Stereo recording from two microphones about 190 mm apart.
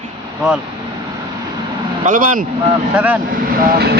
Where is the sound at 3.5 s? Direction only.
50° right (ahead or behind).